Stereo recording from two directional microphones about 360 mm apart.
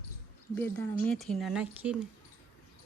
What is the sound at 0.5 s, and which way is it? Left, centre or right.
Speech, centre.